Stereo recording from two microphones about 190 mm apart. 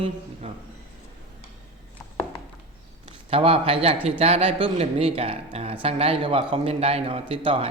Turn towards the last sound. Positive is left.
turn(degrees=-30)  # may be behind; listen again after turning